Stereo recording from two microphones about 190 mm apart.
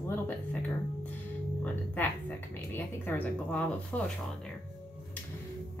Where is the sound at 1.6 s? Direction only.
10° left (ahead or behind).